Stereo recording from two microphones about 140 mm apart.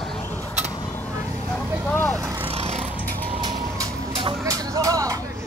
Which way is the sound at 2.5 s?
50° right (ahead or behind).